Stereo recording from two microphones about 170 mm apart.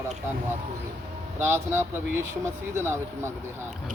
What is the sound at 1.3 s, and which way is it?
Speech, 15° right (ahead or behind).